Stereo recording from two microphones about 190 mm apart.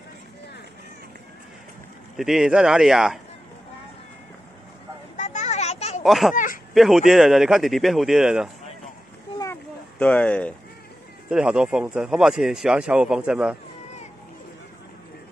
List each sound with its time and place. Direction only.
2.1 s speech: centre (ahead or behind)
5.1 s children playing: 40° left (ahead or behind)
6.0 s speech: centre (ahead or behind)
6.3 s a sound: 45° left (ahead or behind)
6.7 s speech: centre (ahead or behind)
9.9 s speech: 5° left (ahead or behind)
11.2 s speech: 5° right (ahead or behind)